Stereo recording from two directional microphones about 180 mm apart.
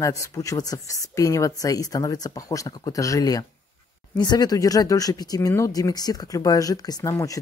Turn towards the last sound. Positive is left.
turn(degrees=20)  # may be behind; listen again after turning